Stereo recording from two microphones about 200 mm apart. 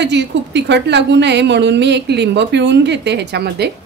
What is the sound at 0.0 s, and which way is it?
A woman's voice, 60° right (ahead or behind).